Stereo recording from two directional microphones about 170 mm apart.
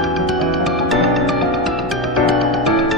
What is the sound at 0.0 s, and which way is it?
Music, centre (ahead or behind).